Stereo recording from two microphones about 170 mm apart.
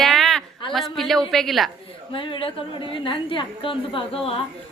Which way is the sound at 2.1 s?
30° left (ahead or behind).